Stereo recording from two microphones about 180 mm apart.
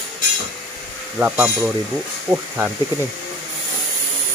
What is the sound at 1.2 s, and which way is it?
Speech, 10° right (ahead or behind).